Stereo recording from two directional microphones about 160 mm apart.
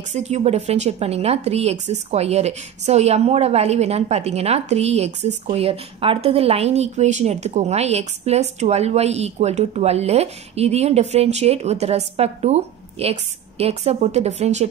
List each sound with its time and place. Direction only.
0.1 s a woman's voice: 45° right (ahead or behind)